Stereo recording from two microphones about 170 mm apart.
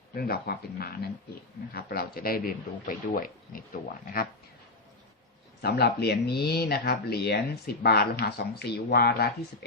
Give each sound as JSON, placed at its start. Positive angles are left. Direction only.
{"t": 0.2, "sound": "speech", "side_deg": 70}
{"t": 5.6, "sound": "speech", "side_deg": 75}